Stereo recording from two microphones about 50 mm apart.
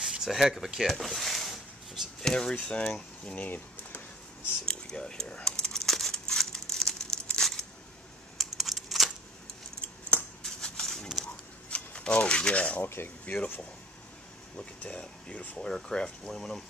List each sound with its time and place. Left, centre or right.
0.0 s speech: centre
0.8 s a sound: centre
2.5 s speech: left
3.4 s a sound: left
4.6 s a sound: centre
8.5 s a sound: centre
10.4 s scissors: centre
11.7 s speech: left
12.8 s speech: left
13.2 s speech: left
14.8 s speech: left
15.7 s speech: centre